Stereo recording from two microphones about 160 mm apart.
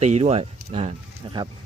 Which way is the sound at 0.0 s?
40° right (ahead or behind).